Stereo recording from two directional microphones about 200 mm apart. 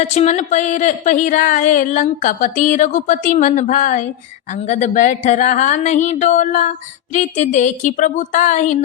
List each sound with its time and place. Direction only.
0.0 s speech: 35° left (ahead or behind)